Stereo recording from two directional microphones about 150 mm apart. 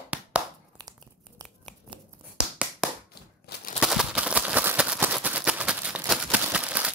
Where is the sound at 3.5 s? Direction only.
90° left.